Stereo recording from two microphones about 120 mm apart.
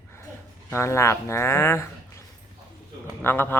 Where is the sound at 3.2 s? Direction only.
15° left (ahead or behind).